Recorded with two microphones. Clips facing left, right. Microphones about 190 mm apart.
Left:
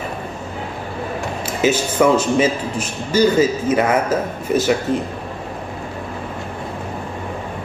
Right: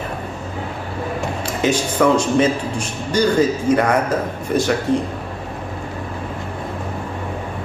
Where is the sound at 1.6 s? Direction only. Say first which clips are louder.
Left 1 dB; 5° left (ahead or behind).